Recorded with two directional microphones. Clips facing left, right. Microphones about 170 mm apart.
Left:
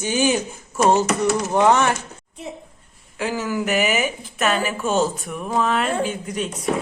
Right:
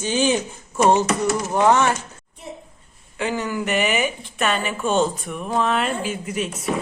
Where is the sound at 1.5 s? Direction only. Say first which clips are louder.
Even; 15° left (ahead or behind).